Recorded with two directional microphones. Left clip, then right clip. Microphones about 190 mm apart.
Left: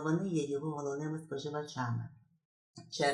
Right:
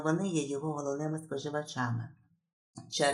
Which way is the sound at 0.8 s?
30° right (ahead or behind).